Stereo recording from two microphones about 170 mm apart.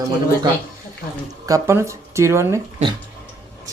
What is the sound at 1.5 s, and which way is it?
Speech, 20° right (ahead or behind).